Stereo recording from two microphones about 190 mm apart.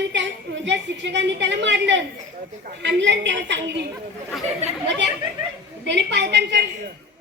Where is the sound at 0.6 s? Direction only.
65° right (ahead or behind).